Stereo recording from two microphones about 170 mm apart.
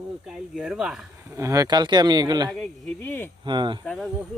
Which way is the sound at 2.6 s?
10° left (ahead or behind).